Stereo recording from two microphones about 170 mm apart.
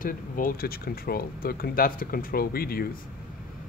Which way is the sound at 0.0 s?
55° left (ahead or behind).